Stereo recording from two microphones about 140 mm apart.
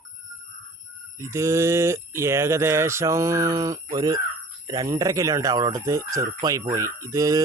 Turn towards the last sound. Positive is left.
turn(degrees=-25)  # may be behind; listen again after turning